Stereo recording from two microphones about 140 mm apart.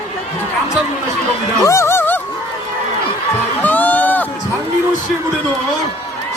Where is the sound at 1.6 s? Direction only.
20° left (ahead or behind).